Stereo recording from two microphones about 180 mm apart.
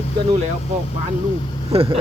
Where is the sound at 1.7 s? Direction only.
30° right (ahead or behind).